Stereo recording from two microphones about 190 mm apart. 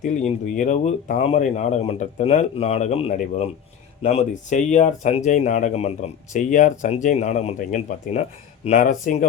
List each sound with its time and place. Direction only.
0.0 s speech: 40° left (ahead or behind)